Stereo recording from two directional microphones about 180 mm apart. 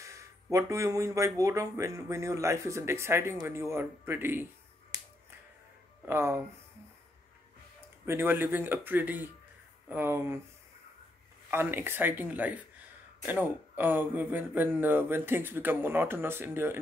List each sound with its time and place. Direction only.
0.0 s speech: 15° right (ahead or behind)
6.0 s speech: 15° right (ahead or behind)
8.0 s speech: 15° right (ahead or behind)
11.5 s speech: 10° right (ahead or behind)